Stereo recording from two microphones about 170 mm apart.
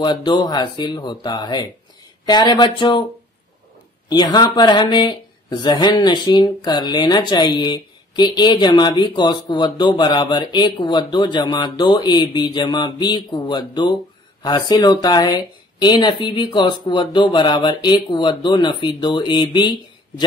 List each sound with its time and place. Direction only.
0.0 s speech: 25° left (ahead or behind)
4.1 s speech: 25° left (ahead or behind)